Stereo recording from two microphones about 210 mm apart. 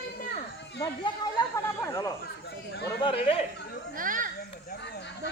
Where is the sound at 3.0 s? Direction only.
25° left (ahead or behind).